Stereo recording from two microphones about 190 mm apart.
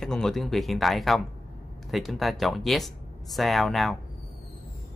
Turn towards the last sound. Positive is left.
turn(degrees=0)  # may be behind; listen again after turning